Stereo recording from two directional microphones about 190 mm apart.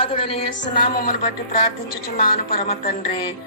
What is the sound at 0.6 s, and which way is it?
A woman's voice, 45° left (ahead or behind).